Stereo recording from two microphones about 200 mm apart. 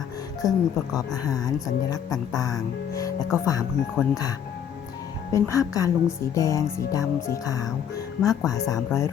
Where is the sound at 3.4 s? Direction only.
15° left (ahead or behind).